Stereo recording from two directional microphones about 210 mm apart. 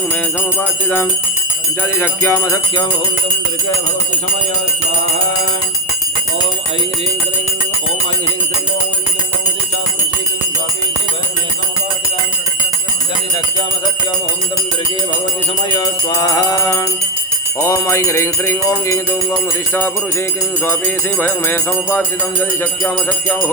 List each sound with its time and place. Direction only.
1.8 s music: 10° left (ahead or behind)
15.7 s music: 20° left (ahead or behind)